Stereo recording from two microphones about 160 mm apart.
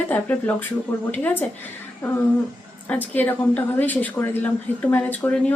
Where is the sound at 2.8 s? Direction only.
10° left (ahead or behind).